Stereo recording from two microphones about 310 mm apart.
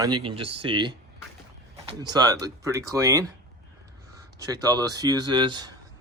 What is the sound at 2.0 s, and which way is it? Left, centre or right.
Speech, centre.